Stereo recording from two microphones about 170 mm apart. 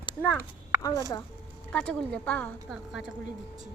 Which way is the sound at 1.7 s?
5° left (ahead or behind).